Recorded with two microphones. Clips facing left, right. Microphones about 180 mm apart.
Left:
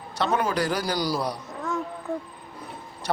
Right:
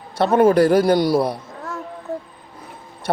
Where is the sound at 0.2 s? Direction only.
55° right (ahead or behind).